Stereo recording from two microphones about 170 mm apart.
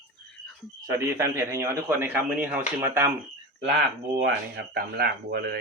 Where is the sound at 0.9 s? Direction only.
15° right (ahead or behind).